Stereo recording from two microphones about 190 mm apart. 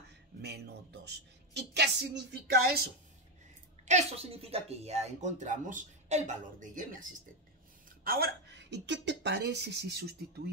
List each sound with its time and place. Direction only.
0.4 s a woman's voice: 60° right (ahead or behind)
3.8 s a woman's voice: 35° right (ahead or behind); by 10.5 s 60° right (ahead or behind)